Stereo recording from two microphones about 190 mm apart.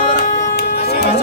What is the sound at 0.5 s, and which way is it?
Music, 55° left (ahead or behind).